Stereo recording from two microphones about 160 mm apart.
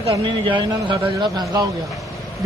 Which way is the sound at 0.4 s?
30° right (ahead or behind).